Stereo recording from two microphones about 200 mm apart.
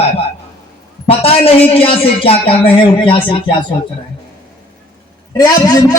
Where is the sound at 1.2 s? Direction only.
30° left (ahead or behind).